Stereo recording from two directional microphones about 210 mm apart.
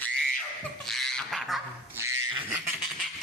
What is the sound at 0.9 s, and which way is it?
Dog, centre (ahead or behind).